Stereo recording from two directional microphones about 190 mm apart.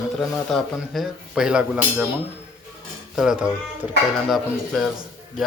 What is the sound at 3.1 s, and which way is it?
Speech, 5° right (ahead or behind).